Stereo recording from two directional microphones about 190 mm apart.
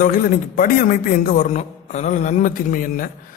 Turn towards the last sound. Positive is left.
turn(degrees=45)  # may be behind; listen again after turning